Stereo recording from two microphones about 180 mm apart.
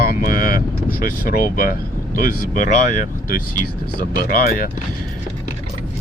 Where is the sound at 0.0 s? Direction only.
55° left (ahead or behind).